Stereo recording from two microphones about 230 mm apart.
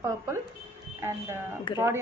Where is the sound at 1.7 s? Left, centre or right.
Left.